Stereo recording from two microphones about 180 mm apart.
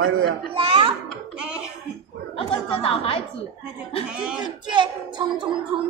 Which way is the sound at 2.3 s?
30° left (ahead or behind).